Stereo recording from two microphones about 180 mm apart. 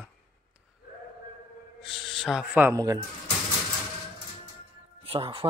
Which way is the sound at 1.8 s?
Centre (ahead or behind).